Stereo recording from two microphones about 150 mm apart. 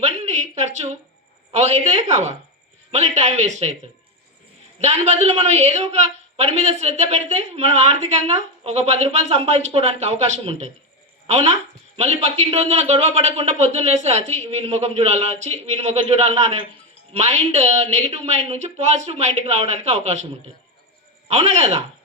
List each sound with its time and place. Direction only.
0.0 s a sound: 50° right (ahead or behind)
1.5 s a woman's voice: 50° right (ahead or behind)
4.8 s a woman's voice: 50° right (ahead or behind)
21.2 s a woman's voice: 50° right (ahead or behind)